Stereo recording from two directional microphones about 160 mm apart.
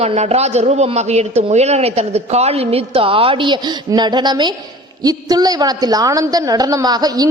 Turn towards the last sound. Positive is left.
turn(degrees=-25)  # may be behind; listen again after turning